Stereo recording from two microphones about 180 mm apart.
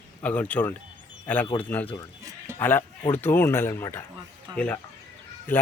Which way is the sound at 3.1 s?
10° left (ahead or behind).